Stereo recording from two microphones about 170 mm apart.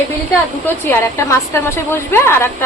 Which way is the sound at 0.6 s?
10° left (ahead or behind).